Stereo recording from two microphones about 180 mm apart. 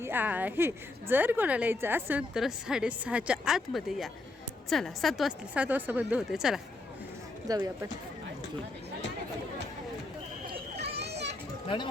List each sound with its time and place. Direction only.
0.0 s a woman's voice: 10° right (ahead or behind)
7.4 s speech: 20° right (ahead or behind)
10.8 s children playing: 65° right (ahead or behind)